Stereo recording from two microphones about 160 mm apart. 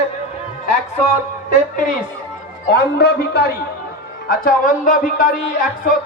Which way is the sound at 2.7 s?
85° left.